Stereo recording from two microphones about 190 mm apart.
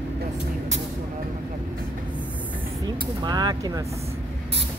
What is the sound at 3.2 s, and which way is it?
Vehicle, 20° right (ahead or behind).